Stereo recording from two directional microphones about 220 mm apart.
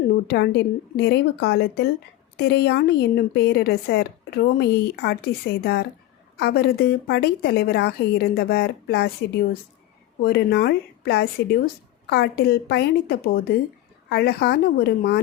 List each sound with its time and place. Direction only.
0.3 s a woman's voice: 50° left (ahead or behind)